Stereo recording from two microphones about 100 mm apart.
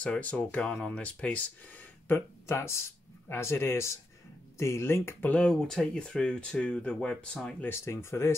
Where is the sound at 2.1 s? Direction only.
25° left (ahead or behind).